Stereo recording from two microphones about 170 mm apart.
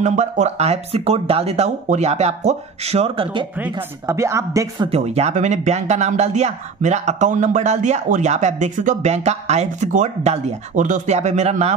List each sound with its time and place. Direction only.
0.0 s speech: 45° right (ahead or behind)
4.0 s a woman's voice: 15° right (ahead or behind)
4.8 s speech: 40° right (ahead or behind)